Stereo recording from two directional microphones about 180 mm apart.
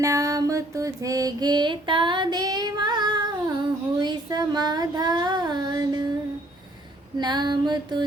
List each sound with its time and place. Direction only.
0.0 s mantra: 20° right (ahead or behind)
4.0 s child singing: 20° right (ahead or behind)
7.2 s female singing: 25° right (ahead or behind)